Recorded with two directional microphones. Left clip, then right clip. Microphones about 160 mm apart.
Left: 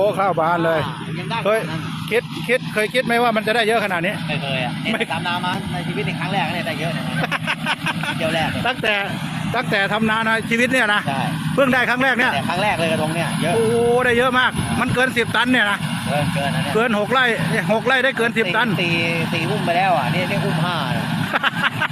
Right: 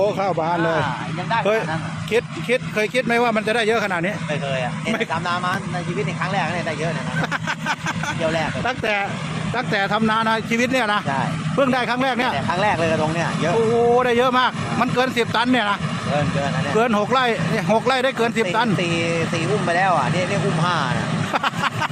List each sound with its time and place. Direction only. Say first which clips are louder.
0.0 s speech: left 3 dB; 10° right (ahead or behind)
8.2 s speech: left 1 dB; 10° right (ahead or behind)
21.3 s vehicle: left 2 dB; 15° right (ahead or behind)